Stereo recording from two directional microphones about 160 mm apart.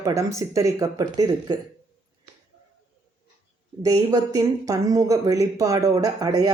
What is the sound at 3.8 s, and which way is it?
Speech, 20° right (ahead or behind).